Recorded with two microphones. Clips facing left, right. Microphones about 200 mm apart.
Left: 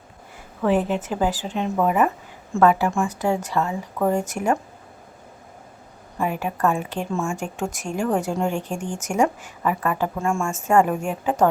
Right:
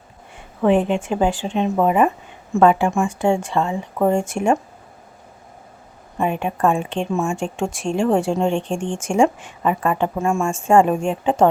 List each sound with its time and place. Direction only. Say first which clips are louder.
0.3 s a woman's voice: right 4 dB; 25° right (ahead or behind)
6.1 s speech: right 3 dB; 25° right (ahead or behind)
10.5 s speech: right 4 dB; 30° right (ahead or behind)